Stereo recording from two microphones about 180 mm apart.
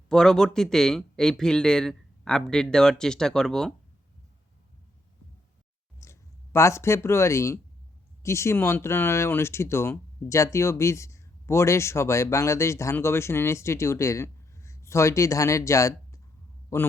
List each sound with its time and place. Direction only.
0.1 s speech: 5° left (ahead or behind)
6.0 s a man's voice: 15° left (ahead or behind)